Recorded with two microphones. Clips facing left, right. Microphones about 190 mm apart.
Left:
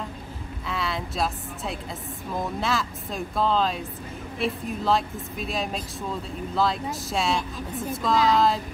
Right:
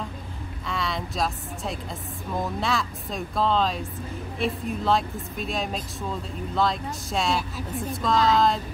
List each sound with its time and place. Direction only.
0.7 s speech: centre (ahead or behind)